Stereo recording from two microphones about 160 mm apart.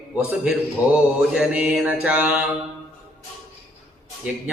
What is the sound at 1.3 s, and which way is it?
Mantra, 5° right (ahead or behind).